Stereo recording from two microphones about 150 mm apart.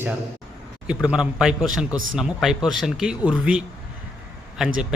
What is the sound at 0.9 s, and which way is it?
Speech, 5° right (ahead or behind).